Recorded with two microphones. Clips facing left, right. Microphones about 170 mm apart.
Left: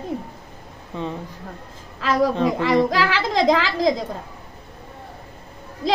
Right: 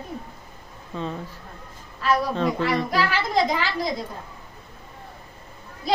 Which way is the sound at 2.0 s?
90° left.